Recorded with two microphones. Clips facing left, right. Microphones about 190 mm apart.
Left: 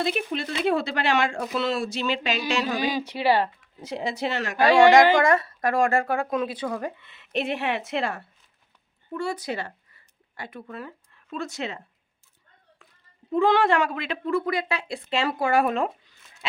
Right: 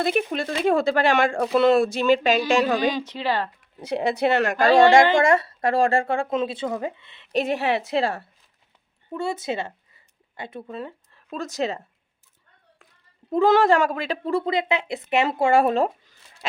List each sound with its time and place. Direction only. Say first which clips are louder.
0.0 s speech: right 4 dB; 50° right (ahead or behind)
2.9 s speech: left 3 dB; 10° left (ahead or behind)
3.8 s speech: right 6 dB; 65° right (ahead or behind)
5.1 s speech: right 2 dB; 25° right (ahead or behind)
7.3 s a woman's voice: right 4 dB; 40° right (ahead or behind)
11.3 s a woman's voice: right 5 dB; 40° right (ahead or behind)
13.3 s a woman's voice: right 3 dB; 40° right (ahead or behind)